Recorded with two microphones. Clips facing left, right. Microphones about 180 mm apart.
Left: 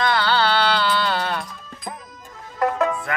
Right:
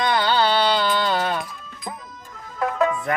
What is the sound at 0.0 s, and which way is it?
Music, 15° right (ahead or behind).